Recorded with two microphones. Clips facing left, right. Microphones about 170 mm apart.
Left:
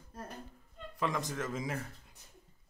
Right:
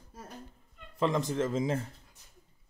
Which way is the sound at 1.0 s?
25° right (ahead or behind).